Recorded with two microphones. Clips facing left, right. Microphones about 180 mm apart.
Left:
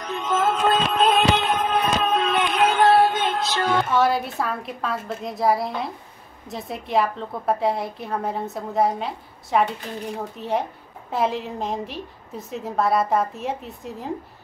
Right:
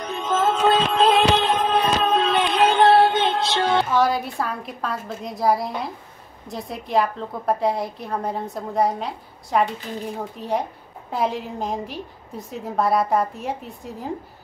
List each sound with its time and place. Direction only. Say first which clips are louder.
0.0 s a sound: right 1 dB; 25° right (ahead or behind)
1.1 s music: right 2 dB; 30° right (ahead or behind)
3.9 s a woman's voice: even; centre (ahead or behind)